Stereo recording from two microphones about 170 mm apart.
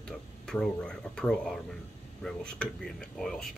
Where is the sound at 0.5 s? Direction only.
5° left (ahead or behind).